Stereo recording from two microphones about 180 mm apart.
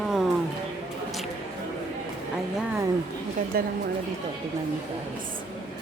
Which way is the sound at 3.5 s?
55° right (ahead or behind).